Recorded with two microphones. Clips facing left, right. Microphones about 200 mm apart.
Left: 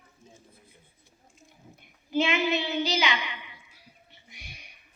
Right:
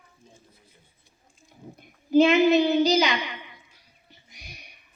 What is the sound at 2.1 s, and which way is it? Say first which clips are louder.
Female singing: right 9 dB; 40° right (ahead or behind).